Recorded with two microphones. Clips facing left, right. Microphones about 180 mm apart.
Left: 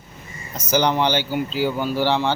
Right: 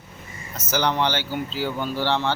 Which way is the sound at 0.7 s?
15° left (ahead or behind).